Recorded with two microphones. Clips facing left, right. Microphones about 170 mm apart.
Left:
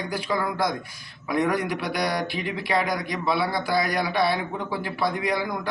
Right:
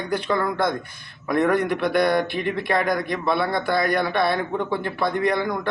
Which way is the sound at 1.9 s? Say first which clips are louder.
Right 8 dB; 55° right (ahead or behind).